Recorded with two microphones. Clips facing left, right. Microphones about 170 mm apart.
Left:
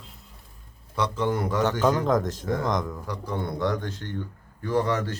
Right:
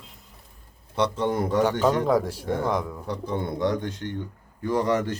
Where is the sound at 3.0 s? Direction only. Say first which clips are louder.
Right 2 dB; 25° right (ahead or behind).